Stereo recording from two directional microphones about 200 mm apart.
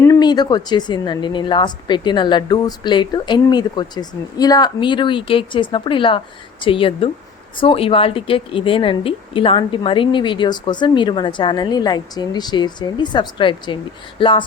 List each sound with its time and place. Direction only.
0.0 s a woman's voice: 20° left (ahead or behind)